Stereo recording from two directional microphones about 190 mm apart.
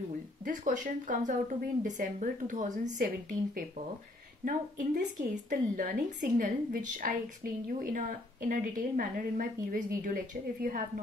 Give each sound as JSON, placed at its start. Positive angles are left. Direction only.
{"t": 0.5, "sound": "a woman's voice", "side_deg": -45}